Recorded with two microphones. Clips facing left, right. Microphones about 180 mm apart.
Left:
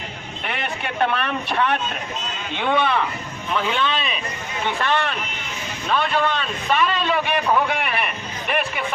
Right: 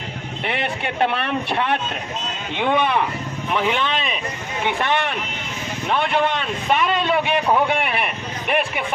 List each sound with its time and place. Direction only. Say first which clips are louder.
0.4 s a man's voice: right 3 dB; 25° right (ahead or behind)